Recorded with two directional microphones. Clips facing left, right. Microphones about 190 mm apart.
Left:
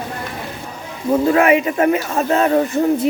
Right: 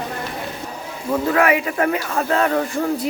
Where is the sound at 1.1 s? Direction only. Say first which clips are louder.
Left 4 dB; 25° left (ahead or behind).